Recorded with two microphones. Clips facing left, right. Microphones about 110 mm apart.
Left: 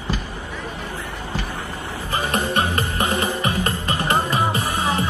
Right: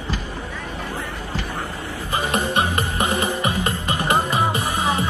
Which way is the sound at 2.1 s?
15° right (ahead or behind).